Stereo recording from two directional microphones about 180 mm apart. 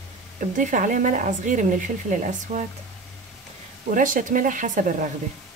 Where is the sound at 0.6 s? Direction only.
45° right (ahead or behind).